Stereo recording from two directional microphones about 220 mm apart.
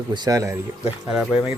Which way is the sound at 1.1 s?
Centre (ahead or behind).